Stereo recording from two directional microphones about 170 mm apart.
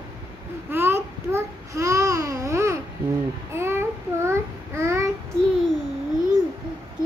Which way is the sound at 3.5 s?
15° right (ahead or behind).